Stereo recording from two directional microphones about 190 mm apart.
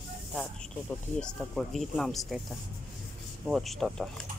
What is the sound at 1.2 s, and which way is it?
Speech, 5° left (ahead or behind).